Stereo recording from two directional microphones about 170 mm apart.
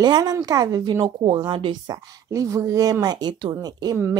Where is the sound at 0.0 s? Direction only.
25° right (ahead or behind).